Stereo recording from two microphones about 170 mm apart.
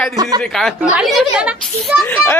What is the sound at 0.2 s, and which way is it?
Speech, 20° right (ahead or behind).